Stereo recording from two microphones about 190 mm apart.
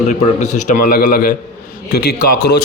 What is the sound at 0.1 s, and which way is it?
A man's voice, 40° left (ahead or behind).